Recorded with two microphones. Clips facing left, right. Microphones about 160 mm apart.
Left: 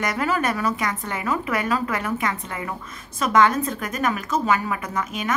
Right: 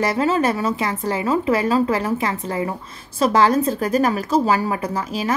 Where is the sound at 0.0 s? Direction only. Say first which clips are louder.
Right 5 dB; 30° right (ahead or behind).